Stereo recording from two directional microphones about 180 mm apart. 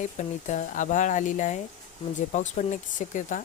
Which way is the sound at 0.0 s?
45° left (ahead or behind).